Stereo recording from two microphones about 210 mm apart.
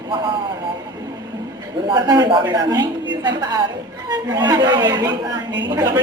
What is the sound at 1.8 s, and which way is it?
Speech, 20° right (ahead or behind).